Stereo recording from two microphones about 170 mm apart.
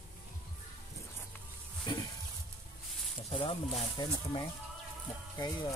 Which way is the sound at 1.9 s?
25° left (ahead or behind).